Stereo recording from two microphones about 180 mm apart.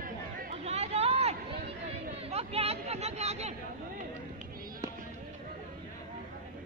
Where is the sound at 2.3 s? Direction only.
35° right (ahead or behind).